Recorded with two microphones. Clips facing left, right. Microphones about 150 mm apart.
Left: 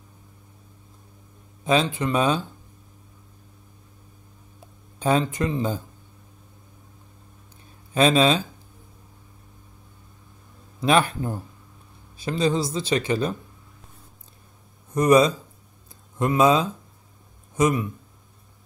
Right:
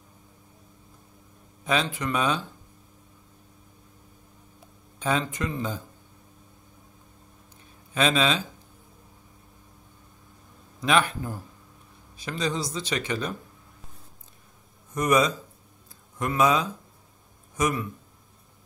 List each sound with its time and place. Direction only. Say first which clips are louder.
1.6 s speech: left 5 dB; 25° left (ahead or behind)
4.9 s speech: left 5 dB; 35° left (ahead or behind)
7.9 s speech: left 5 dB; 35° left (ahead or behind)
10.8 s speech: left 3 dB; 35° left (ahead or behind)
15.0 s speech: left 6 dB; 35° left (ahead or behind)